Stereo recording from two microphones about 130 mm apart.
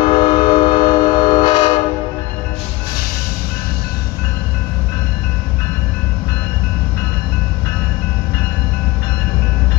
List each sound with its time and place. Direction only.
0.0 s train: 35° left (ahead or behind)